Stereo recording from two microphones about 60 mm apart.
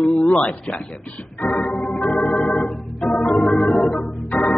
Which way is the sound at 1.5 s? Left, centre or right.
Left.